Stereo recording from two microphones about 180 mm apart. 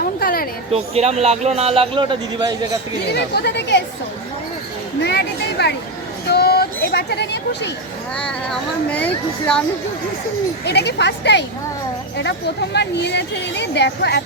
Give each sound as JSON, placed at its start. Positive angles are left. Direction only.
{"t": 0.0, "sound": "a sound", "side_deg": 55}
{"t": 0.7, "sound": "a man's voice", "side_deg": -35}
{"t": 3.1, "sound": "speech", "side_deg": 65}
{"t": 5.0, "sound": "a sound", "side_deg": 70}
{"t": 8.1, "sound": "speech", "side_deg": 5}
{"t": 10.7, "sound": "speech", "side_deg": 70}
{"t": 12.7, "sound": "speech", "side_deg": 70}